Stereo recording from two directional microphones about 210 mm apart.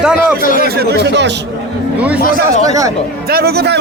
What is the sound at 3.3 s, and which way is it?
Speech, 45° right (ahead or behind).